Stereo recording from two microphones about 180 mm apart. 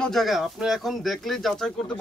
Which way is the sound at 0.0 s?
Centre (ahead or behind).